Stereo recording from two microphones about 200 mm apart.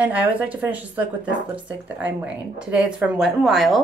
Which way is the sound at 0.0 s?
10° right (ahead or behind).